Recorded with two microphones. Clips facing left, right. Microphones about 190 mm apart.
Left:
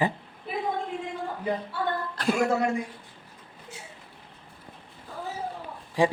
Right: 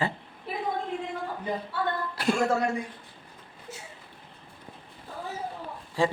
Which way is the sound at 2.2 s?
10° right (ahead or behind).